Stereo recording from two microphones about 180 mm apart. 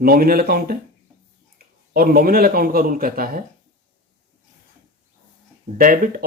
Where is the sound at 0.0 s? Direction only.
55° right (ahead or behind).